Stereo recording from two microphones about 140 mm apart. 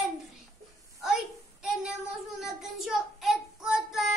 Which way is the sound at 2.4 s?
5° right (ahead or behind).